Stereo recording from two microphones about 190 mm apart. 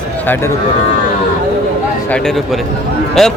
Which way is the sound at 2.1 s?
5° left (ahead or behind).